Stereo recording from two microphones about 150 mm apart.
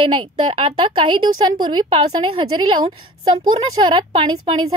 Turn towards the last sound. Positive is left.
turn(degrees=-35)  # may be behind; listen again after turning